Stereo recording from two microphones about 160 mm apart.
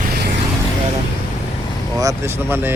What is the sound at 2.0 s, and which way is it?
Speech, 15° right (ahead or behind).